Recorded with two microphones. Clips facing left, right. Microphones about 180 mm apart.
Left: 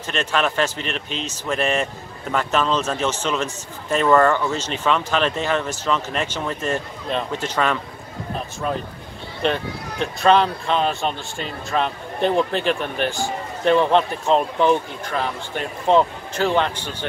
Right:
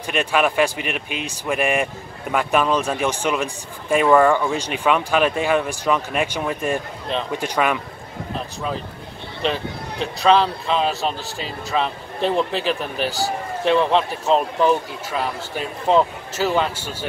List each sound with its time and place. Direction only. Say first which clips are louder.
0.0 s speech: right 2 dB; 10° right (ahead or behind)
9.4 s speech: left 1 dB; centre (ahead or behind)